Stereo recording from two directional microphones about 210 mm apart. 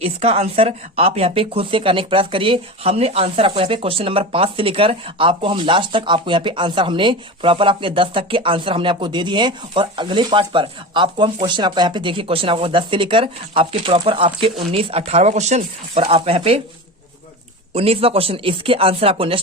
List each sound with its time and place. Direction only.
0.0 s speech: 30° right (ahead or behind)
17.7 s speech: 30° right (ahead or behind)